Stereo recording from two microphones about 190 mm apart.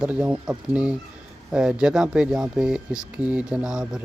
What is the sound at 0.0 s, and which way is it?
Speech, 5° right (ahead or behind).